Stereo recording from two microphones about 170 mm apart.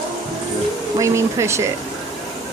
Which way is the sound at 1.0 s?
15° right (ahead or behind).